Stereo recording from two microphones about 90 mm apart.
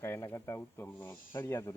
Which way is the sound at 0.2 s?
35° left (ahead or behind).